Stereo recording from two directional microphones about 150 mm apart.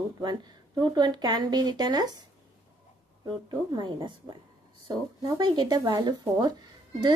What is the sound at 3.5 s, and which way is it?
Speech, 30° right (ahead or behind).